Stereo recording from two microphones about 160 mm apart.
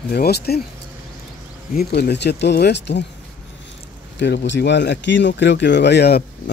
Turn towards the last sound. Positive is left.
turn(degrees=90)